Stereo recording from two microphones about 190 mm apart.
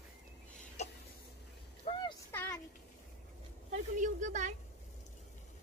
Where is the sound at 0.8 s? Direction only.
35° left (ahead or behind).